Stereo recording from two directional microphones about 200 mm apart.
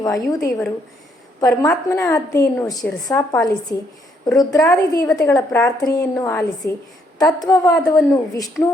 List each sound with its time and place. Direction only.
0.0 s a woman's voice: 15° left (ahead or behind)